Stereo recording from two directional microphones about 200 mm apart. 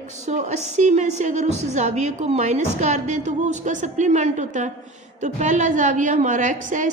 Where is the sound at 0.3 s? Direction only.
35° right (ahead or behind).